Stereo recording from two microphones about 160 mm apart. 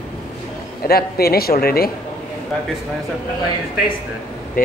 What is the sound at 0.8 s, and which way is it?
Speech, 75° left (ahead or behind).